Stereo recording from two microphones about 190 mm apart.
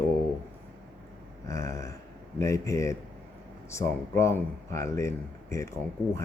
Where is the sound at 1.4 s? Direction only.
15° left (ahead or behind).